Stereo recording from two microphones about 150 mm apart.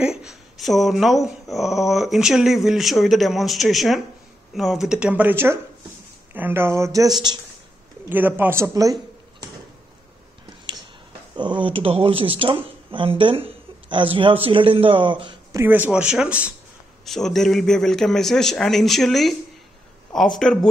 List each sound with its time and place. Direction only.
0.0 s speech: 5° right (ahead or behind); by 7.3 s 25° right (ahead or behind)
8.1 s speech: 15° right (ahead or behind)
11.3 s speech: 30° right (ahead or behind)
15.5 s speech: 15° right (ahead or behind); by 20.3 s 5° left (ahead or behind)